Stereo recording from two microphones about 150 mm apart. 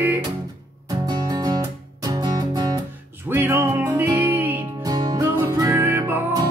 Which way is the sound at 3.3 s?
15° right (ahead or behind).